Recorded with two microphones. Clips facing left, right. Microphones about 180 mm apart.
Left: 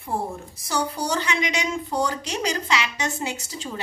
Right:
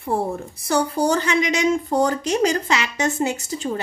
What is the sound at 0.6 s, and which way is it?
A woman's voice, 55° right (ahead or behind).